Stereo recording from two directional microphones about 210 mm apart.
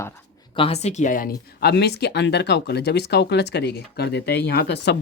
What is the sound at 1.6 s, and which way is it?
Speech, 50° left (ahead or behind).